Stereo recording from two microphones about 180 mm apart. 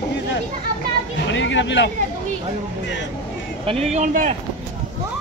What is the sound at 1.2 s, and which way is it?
Speech, 90° left.